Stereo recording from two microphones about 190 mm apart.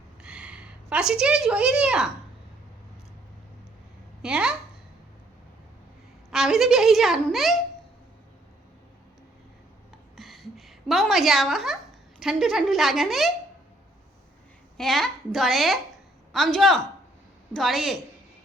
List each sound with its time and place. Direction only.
0.2 s a woman's voice: 5° right (ahead or behind)
4.2 s a woman's voice: 5° right (ahead or behind)
6.3 s a child's voice: centre (ahead or behind)
10.2 s a sound: centre (ahead or behind)
12.2 s a child's voice: centre (ahead or behind)
14.8 s a child's voice: centre (ahead or behind)